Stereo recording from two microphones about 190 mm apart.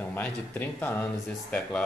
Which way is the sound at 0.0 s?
10° left (ahead or behind).